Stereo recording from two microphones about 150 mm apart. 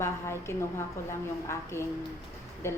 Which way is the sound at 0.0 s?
20° left (ahead or behind).